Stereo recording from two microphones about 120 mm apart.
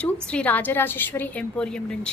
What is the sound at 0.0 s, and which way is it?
A woman's voice, 10° left (ahead or behind).